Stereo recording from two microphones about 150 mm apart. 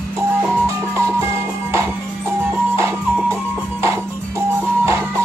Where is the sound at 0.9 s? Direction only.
20° right (ahead or behind).